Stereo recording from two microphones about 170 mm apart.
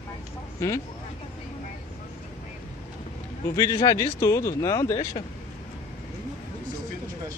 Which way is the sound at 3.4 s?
20° left (ahead or behind).